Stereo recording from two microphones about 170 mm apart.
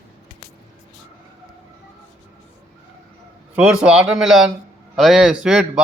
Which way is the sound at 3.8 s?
5° right (ahead or behind).